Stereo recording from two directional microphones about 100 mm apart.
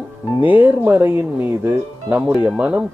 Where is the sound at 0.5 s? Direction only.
15° right (ahead or behind).